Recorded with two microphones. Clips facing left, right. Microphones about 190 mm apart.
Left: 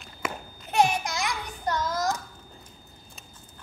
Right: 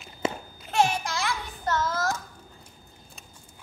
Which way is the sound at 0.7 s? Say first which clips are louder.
Left 1 dB; 20° left (ahead or behind).